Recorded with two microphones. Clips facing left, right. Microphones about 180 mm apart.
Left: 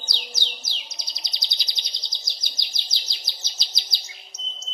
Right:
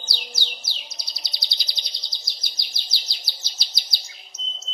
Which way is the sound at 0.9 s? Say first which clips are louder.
Even; 20° left (ahead or behind).